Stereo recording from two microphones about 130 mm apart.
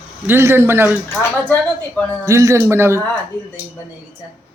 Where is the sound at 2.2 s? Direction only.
25° right (ahead or behind).